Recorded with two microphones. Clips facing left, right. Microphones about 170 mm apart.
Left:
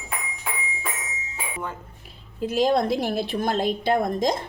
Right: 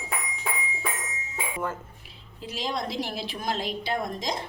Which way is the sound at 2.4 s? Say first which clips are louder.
Left 11 dB; 50° left (ahead or behind).